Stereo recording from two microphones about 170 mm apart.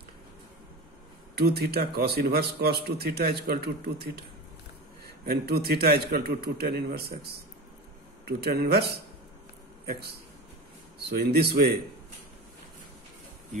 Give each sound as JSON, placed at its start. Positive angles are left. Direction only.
{"t": 1.3, "sound": "a man's voice", "side_deg": -70}